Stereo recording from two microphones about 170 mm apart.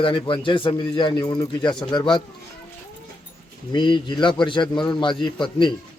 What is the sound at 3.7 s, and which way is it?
Speech, 30° left (ahead or behind).